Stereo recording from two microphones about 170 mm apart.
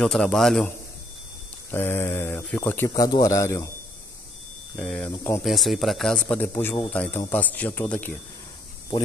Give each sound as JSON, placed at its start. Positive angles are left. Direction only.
{"t": 0.0, "sound": "speech", "side_deg": 5}
{"t": 1.7, "sound": "speech", "side_deg": 15}
{"t": 2.9, "sound": "speech", "side_deg": 25}
{"t": 4.7, "sound": "speech", "side_deg": 5}
{"t": 5.1, "sound": "speech", "side_deg": 15}
{"t": 5.4, "sound": "speech", "side_deg": 0}